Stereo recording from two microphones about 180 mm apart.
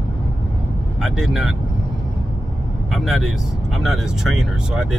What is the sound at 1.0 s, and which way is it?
Speech, centre (ahead or behind).